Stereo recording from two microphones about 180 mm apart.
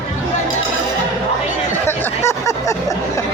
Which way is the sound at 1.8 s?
15° left (ahead or behind).